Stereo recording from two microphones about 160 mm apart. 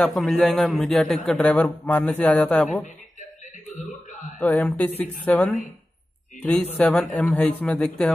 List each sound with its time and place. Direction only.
0.0 s a man's voice: centre (ahead or behind)
3.2 s a sound: 55° left (ahead or behind)
4.4 s speech: 10° left (ahead or behind)